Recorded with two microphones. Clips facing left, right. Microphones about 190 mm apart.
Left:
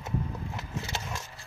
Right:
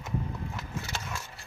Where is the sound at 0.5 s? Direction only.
20° left (ahead or behind).